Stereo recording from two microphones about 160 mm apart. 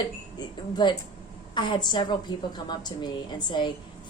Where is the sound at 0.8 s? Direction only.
25° left (ahead or behind).